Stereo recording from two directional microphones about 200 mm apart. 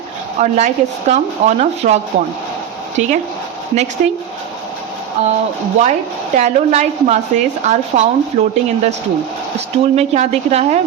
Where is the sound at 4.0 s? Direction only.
40° right (ahead or behind).